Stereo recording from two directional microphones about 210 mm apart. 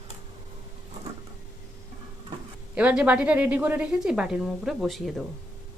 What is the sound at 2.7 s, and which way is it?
A woman's voice, 5° right (ahead or behind).